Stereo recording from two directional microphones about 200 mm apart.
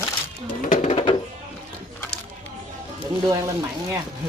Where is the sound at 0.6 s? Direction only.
40° left (ahead or behind).